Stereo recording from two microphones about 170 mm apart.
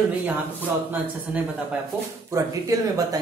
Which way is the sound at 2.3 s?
20° right (ahead or behind).